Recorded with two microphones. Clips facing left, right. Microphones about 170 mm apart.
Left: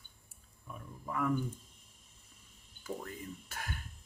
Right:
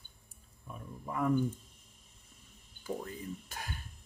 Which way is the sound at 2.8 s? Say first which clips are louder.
Right 3 dB; 15° right (ahead or behind).